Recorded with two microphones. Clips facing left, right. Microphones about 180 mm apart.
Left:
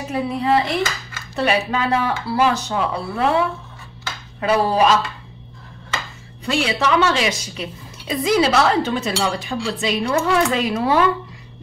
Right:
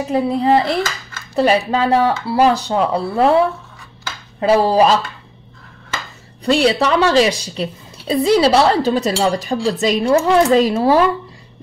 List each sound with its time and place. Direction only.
0.1 s speech: 35° right (ahead or behind)
6.4 s speech: 40° right (ahead or behind)